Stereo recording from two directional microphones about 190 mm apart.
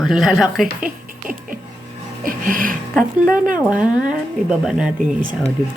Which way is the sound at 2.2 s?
45° right (ahead or behind).